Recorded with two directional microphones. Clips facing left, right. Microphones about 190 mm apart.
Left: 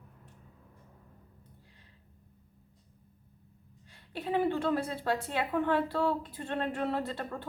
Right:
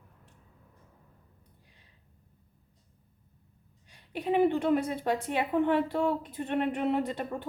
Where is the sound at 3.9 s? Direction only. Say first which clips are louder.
Right 4 dB; 15° right (ahead or behind).